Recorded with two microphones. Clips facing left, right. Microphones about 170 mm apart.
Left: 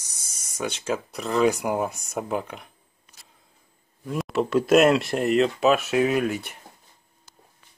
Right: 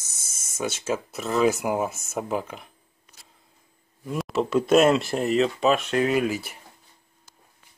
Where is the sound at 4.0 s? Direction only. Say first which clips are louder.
Left 1 dB; centre (ahead or behind).